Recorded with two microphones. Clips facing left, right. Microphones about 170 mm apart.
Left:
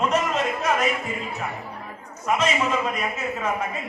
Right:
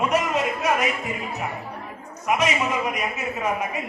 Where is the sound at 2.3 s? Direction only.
15° right (ahead or behind).